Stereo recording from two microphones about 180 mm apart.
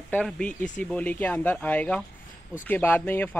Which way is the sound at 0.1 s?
5° left (ahead or behind).